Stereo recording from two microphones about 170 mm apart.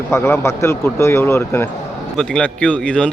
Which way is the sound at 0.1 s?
15° left (ahead or behind).